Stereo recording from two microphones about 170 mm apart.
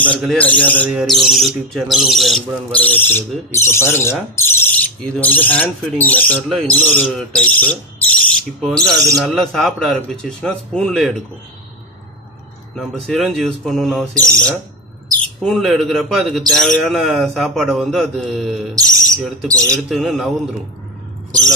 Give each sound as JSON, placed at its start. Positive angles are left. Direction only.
{"t": 0.0, "sound": "speech", "side_deg": 5}
{"t": 0.8, "sound": "speech", "side_deg": 0}
{"t": 12.7, "sound": "speech", "side_deg": 0}
{"t": 14.1, "sound": "speech", "side_deg": -15}
{"t": 15.4, "sound": "speech", "side_deg": 0}